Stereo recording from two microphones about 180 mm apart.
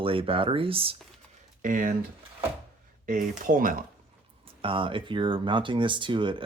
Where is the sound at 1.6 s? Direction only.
45° right (ahead or behind).